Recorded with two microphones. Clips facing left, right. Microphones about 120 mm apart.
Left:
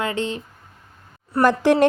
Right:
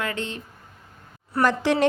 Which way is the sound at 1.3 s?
45° left (ahead or behind).